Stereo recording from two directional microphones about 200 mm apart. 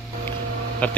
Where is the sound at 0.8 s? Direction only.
5° left (ahead or behind).